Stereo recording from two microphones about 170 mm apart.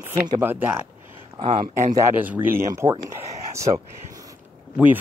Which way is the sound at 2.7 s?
20° right (ahead or behind).